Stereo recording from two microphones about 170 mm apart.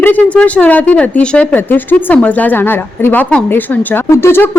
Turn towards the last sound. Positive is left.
turn(degrees=15)  # may be behind; listen again after turning